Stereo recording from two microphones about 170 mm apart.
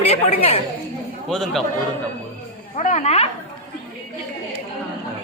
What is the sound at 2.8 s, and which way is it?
Speech, 45° left (ahead or behind).